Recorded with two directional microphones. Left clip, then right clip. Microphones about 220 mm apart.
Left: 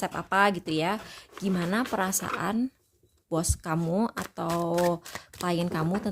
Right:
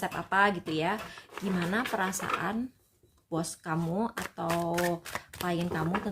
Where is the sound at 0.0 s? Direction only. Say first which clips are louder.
Left 2 dB; 55° left (ahead or behind).